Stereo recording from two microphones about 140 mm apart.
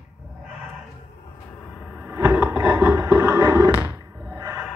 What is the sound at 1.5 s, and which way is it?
Vehicle, centre (ahead or behind).